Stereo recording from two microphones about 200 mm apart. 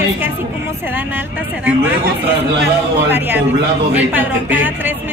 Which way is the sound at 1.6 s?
10° right (ahead or behind).